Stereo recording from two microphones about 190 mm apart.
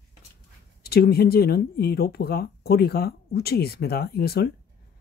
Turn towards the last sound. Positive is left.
turn(degrees=55)  # may be behind; listen again after turning